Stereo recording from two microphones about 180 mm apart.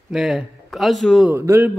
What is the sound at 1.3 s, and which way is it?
Speech, 15° right (ahead or behind).